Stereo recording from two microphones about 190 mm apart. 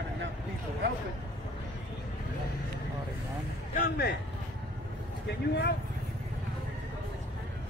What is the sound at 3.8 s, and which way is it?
Speech, 60° left (ahead or behind).